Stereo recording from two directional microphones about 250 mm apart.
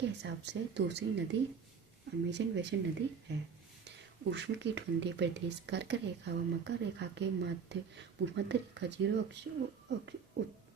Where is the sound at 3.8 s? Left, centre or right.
Right.